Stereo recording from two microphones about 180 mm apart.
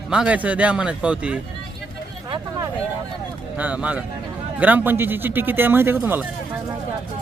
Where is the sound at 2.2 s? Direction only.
25° right (ahead or behind).